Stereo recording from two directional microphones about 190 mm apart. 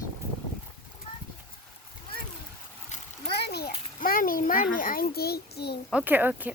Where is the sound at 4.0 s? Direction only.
50° left (ahead or behind).